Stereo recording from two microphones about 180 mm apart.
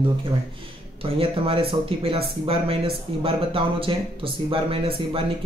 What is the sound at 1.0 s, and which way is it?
Speech, 30° right (ahead or behind).